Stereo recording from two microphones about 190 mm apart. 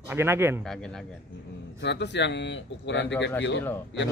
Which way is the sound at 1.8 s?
65° left (ahead or behind).